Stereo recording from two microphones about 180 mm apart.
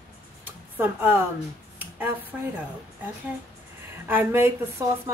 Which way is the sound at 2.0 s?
10° right (ahead or behind).